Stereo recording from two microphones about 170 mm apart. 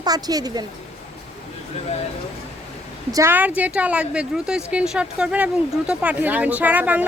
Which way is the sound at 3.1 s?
15° right (ahead or behind).